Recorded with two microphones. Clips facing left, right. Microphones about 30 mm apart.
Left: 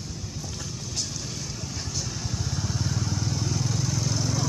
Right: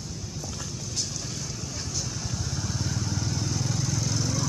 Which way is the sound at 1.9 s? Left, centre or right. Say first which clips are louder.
Left 1 dB; centre.